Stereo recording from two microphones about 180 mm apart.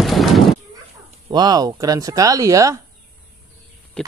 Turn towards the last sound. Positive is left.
turn(degrees=5)  # may be behind; listen again after turning